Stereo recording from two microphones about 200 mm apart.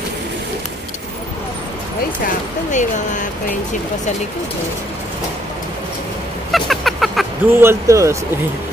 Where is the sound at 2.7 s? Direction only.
40° left (ahead or behind).